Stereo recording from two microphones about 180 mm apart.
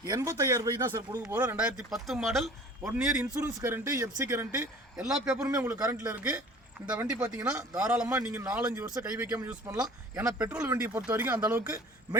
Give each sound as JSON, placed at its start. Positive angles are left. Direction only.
{"t": 0.0, "sound": "speech", "side_deg": -15}
{"t": 5.0, "sound": "speech", "side_deg": -5}
{"t": 5.4, "sound": "speech", "side_deg": -20}